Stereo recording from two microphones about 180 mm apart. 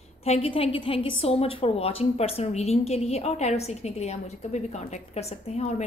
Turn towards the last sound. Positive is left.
turn(degrees=35)  # may be behind; listen again after turning